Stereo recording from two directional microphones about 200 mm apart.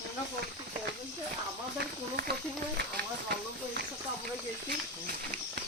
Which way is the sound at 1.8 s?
50° right (ahead or behind).